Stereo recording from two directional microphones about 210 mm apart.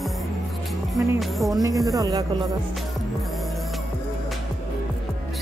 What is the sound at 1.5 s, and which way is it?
Speech, 15° right (ahead or behind).